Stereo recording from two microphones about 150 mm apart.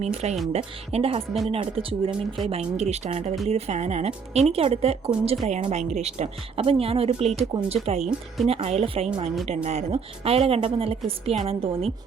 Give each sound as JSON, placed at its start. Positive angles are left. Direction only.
{"t": 0.0, "sound": "a woman's voice", "side_deg": -45}
{"t": 2.0, "sound": "speech", "side_deg": 0}
{"t": 2.5, "sound": "a woman's voice", "side_deg": -45}